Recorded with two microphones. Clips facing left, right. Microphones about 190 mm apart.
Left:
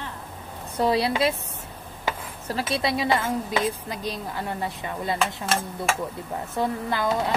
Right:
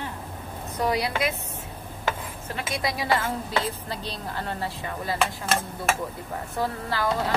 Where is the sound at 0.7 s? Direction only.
30° left (ahead or behind).